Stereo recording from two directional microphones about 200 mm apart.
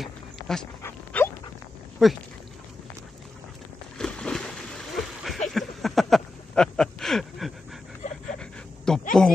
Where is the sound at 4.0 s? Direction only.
5° left (ahead or behind).